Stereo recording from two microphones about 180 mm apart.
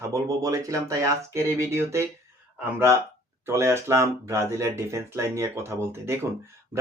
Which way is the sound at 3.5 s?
15° right (ahead or behind).